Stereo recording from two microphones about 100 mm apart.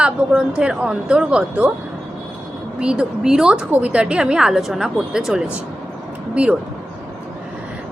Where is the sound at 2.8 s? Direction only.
10° right (ahead or behind).